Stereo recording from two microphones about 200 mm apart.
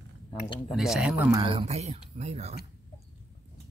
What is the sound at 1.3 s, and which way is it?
Speech, 25° right (ahead or behind).